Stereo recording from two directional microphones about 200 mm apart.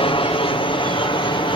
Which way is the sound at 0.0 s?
25° left (ahead or behind).